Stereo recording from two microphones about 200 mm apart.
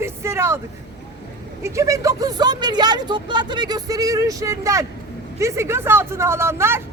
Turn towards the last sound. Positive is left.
turn(degrees=-10)  # may be behind; listen again after turning